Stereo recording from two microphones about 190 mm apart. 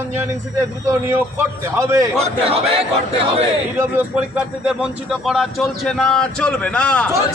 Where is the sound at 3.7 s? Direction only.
5° right (ahead or behind).